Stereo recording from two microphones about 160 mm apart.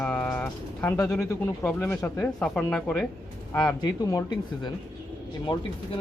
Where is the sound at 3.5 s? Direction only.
20° left (ahead or behind).